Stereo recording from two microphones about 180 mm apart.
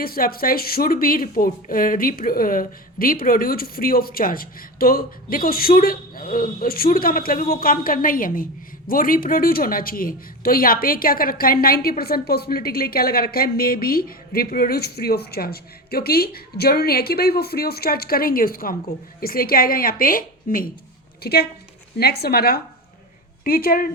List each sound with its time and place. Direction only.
0.0 s a woman's voice: 55° left (ahead or behind)